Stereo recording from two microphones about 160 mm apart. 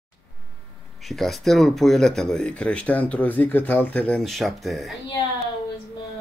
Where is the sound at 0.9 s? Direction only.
Centre (ahead or behind).